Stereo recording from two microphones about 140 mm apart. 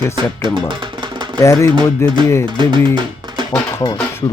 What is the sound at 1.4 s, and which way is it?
Speech, 20° left (ahead or behind).